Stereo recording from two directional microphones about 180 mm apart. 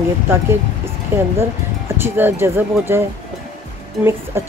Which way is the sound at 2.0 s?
10° right (ahead or behind).